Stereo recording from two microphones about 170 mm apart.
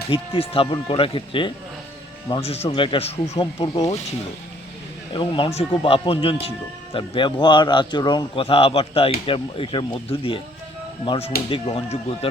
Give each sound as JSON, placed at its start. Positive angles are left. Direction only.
{"t": 0.1, "sound": "speech", "side_deg": 30}
{"t": 3.3, "sound": "a man's voice", "side_deg": 25}
{"t": 5.1, "sound": "a man's voice", "side_deg": 30}